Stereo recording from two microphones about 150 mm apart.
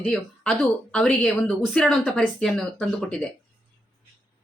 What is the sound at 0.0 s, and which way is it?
Speech, centre (ahead or behind).